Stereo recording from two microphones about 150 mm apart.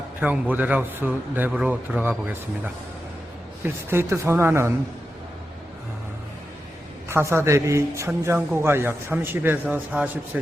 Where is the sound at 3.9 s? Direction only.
15° right (ahead or behind).